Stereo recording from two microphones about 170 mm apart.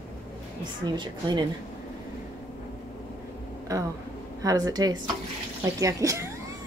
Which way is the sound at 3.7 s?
20° right (ahead or behind).